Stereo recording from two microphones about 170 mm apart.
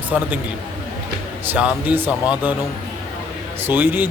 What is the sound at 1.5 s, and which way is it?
Speech, 10° right (ahead or behind).